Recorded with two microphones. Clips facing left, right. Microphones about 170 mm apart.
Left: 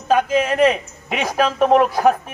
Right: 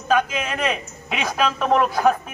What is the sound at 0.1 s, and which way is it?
Speech, 35° left (ahead or behind).